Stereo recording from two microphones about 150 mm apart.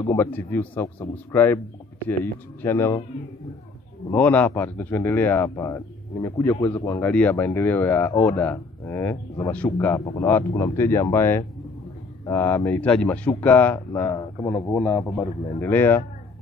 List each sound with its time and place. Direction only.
0.0 s speech: 15° left (ahead or behind)
2.6 s speech: 15° left (ahead or behind)
4.1 s a man's voice: 10° left (ahead or behind)